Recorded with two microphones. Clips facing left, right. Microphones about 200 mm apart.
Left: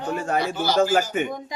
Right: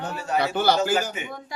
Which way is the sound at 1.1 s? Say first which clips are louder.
Left 10 dB; 55° left (ahead or behind).